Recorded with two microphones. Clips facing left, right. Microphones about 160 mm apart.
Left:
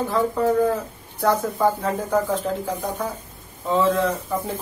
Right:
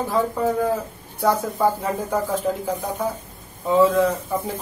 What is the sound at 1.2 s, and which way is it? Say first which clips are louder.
Speech: even; 10° right (ahead or behind).